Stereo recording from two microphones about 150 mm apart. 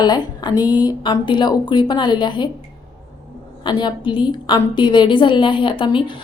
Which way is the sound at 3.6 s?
30° left (ahead or behind).